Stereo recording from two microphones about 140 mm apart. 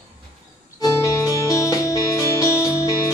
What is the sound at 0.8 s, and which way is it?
Music, 25° left (ahead or behind).